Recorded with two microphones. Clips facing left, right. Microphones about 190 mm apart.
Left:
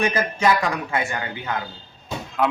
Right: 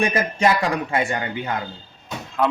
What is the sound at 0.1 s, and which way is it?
Speech, 30° right (ahead or behind).